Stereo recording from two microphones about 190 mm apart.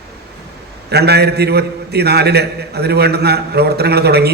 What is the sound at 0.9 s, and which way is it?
A man's voice, 60° right (ahead or behind).